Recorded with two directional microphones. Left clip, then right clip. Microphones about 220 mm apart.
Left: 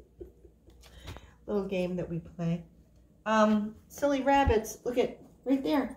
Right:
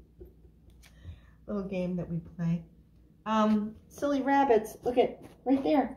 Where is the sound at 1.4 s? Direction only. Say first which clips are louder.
Left 3 dB; 5° left (ahead or behind).